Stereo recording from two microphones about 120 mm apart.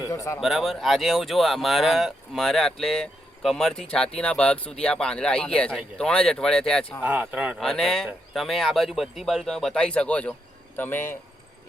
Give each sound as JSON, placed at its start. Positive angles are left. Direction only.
{"t": 0.1, "sound": "a man's voice", "side_deg": 25}
{"t": 0.3, "sound": "speech", "side_deg": 0}
{"t": 7.0, "sound": "speech", "side_deg": -15}
{"t": 7.6, "sound": "speech", "side_deg": 5}